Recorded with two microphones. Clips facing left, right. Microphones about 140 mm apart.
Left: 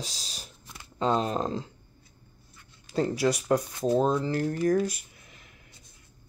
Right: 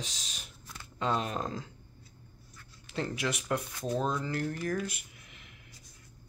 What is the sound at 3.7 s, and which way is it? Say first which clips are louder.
Speech: left 8 dB; 25° left (ahead or behind).